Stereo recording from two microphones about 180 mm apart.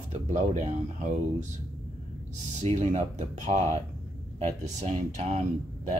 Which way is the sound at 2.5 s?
40° right (ahead or behind).